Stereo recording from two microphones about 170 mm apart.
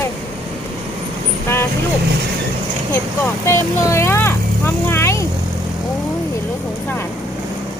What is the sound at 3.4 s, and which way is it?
Vehicle, 15° left (ahead or behind).